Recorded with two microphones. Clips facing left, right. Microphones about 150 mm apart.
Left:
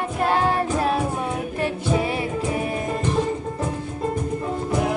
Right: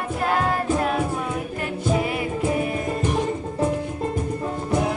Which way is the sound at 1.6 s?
30° left (ahead or behind).